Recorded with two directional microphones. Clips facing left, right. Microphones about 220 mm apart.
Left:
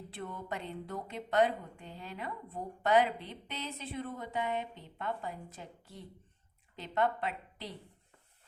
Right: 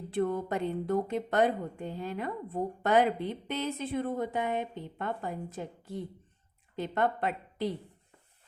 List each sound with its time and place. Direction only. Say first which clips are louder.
0.1 s a woman's voice: right 12 dB; 50° right (ahead or behind)